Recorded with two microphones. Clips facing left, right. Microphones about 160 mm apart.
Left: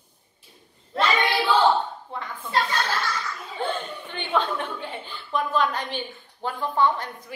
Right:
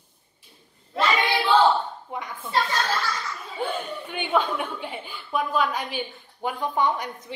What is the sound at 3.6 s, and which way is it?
A woman's voice, 10° right (ahead or behind).